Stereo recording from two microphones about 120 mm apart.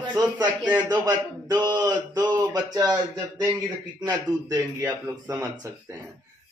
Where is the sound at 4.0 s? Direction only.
30° right (ahead or behind).